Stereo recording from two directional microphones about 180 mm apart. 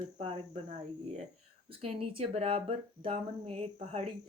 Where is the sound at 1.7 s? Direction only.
30° right (ahead or behind).